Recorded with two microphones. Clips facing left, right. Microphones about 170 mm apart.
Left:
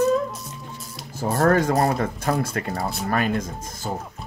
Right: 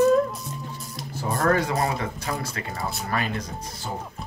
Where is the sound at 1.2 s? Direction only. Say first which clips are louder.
Left 4 dB; 45° left (ahead or behind).